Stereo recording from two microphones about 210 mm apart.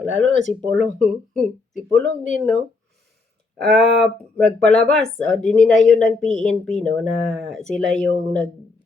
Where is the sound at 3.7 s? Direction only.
Centre (ahead or behind).